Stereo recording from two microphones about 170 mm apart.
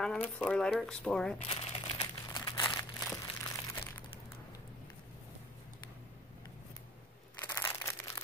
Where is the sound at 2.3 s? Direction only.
25° left (ahead or behind).